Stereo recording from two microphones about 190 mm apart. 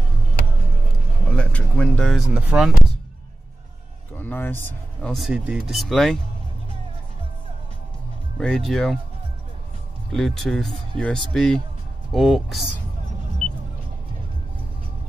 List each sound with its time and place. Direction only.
1.3 s speech: 5° left (ahead or behind)
4.1 s a sound: 10° left (ahead or behind)
5.1 s speech: centre (ahead or behind)
8.4 s speech: centre (ahead or behind)
10.1 s speech: centre (ahead or behind)